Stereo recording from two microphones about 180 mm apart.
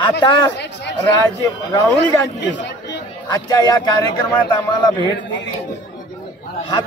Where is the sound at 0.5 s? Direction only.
75° left (ahead or behind).